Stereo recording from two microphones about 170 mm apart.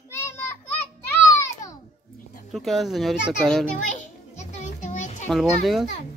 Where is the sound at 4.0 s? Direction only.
45° left (ahead or behind).